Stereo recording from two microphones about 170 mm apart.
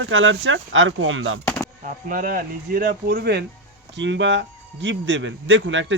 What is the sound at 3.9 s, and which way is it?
A man's voice, 90° right.